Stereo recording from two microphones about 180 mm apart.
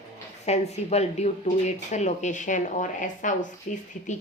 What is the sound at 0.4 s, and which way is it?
A woman's voice, 35° left (ahead or behind).